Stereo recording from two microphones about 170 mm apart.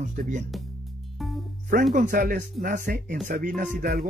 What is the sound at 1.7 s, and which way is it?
Speech, 55° right (ahead or behind).